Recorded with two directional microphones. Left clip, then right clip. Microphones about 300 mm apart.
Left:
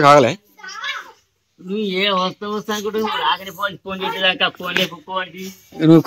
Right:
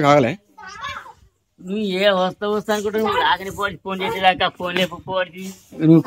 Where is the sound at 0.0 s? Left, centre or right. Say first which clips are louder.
Left 4 dB; centre.